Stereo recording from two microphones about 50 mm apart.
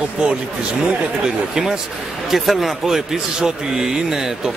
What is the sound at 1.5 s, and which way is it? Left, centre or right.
Speech, centre.